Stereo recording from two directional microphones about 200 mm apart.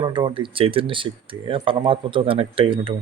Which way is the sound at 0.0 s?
25° right (ahead or behind).